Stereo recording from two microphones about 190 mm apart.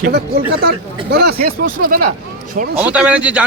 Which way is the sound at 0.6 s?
55° right (ahead or behind).